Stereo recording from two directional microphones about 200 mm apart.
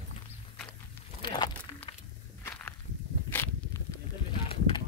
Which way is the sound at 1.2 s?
25° left (ahead or behind).